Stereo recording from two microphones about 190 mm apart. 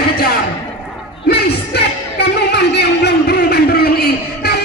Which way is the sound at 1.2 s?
60° left (ahead or behind).